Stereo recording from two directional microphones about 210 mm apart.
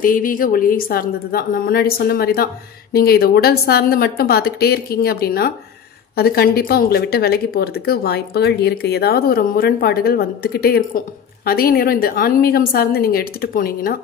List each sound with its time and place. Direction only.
0.0 s speech: 40° left (ahead or behind)